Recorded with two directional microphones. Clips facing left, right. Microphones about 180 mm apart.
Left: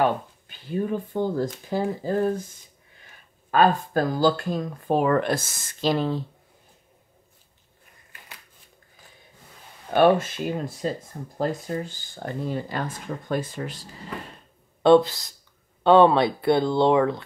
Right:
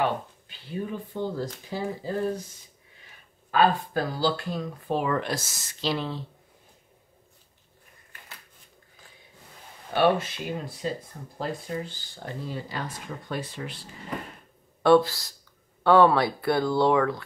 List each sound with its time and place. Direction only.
0.0 s speech: 50° left (ahead or behind)
3.5 s speech: 45° left (ahead or behind)
9.9 s speech: 45° left (ahead or behind)
14.8 s speech: 20° left (ahead or behind)